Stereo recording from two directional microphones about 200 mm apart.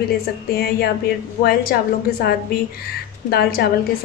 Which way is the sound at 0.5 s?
50° left (ahead or behind).